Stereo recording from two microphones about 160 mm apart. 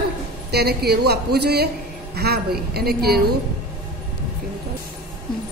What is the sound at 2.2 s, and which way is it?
A woman's voice, 75° right (ahead or behind).